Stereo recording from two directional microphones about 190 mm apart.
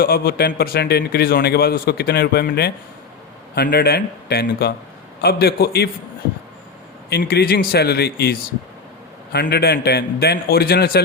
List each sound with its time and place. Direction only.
0.0 s speech: 55° left (ahead or behind)
7.1 s speech: 55° left (ahead or behind)